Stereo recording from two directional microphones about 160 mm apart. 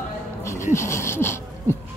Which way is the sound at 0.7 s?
15° left (ahead or behind).